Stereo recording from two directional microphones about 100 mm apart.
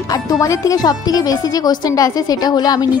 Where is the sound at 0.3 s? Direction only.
35° left (ahead or behind).